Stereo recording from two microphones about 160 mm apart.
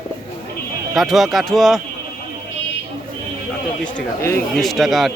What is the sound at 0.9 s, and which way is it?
Speech, centre (ahead or behind).